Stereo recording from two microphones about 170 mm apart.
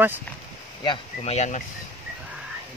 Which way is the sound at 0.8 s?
35° left (ahead or behind).